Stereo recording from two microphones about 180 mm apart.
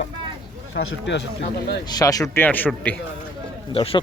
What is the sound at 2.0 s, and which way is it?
Speech, 20° left (ahead or behind).